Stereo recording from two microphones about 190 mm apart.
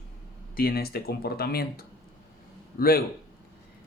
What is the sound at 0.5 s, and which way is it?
A man's voice, 55° left (ahead or behind).